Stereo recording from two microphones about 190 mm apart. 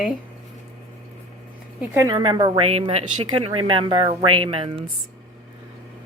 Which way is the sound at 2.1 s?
25° right (ahead or behind).